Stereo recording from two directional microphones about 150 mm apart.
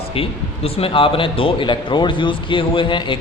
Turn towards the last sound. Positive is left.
turn(degrees=35)  # may be behind; listen again after turning